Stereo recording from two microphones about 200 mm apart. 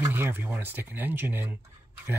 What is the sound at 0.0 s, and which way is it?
Speech, 10° right (ahead or behind).